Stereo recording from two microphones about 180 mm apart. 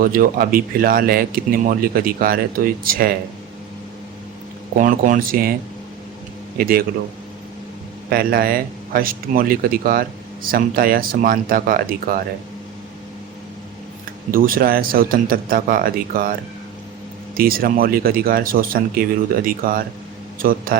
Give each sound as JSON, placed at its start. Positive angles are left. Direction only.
{"t": 0.0, "sound": "speech", "side_deg": -50}
{"t": 4.8, "sound": "speech", "side_deg": -50}
{"t": 6.6, "sound": "speech", "side_deg": -55}
{"t": 8.1, "sound": "speech", "side_deg": -55}
{"t": 14.3, "sound": "speech", "side_deg": -50}
{"t": 17.3, "sound": "speech", "side_deg": -55}